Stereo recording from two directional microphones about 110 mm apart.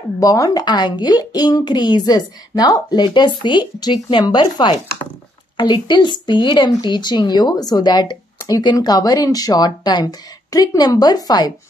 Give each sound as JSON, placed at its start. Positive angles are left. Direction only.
{"t": 0.2, "sound": "a woman's voice", "side_deg": 35}